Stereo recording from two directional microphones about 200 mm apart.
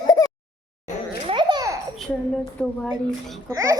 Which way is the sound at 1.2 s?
20° right (ahead or behind).